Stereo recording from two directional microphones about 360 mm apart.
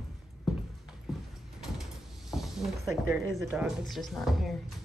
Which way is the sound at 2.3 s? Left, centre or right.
Centre.